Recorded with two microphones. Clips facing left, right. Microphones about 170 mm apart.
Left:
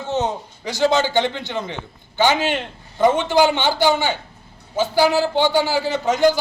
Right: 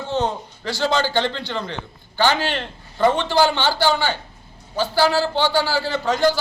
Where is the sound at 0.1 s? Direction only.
20° left (ahead or behind).